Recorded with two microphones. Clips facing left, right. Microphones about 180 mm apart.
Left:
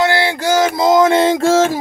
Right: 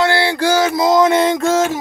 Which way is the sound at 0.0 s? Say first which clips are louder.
Even; 20° left (ahead or behind).